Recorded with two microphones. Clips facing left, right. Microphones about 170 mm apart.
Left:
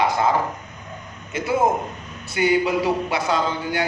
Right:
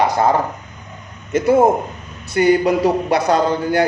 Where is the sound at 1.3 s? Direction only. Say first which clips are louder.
Right 7 dB; 45° right (ahead or behind).